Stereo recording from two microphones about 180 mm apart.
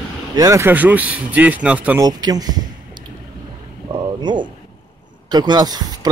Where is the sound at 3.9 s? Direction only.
25° right (ahead or behind).